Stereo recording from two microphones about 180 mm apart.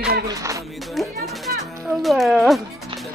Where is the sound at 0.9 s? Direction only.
Centre (ahead or behind).